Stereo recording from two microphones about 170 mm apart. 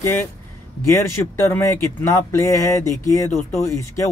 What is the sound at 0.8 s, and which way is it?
Speech, 15° left (ahead or behind).